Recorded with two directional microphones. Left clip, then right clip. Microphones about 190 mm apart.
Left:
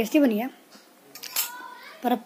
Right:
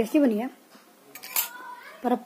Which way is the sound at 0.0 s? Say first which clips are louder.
Left 1 dB; 5° left (ahead or behind).